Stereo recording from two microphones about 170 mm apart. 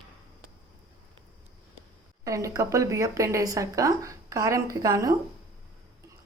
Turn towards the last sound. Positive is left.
turn(degrees=-20)  # may be behind; listen again after turning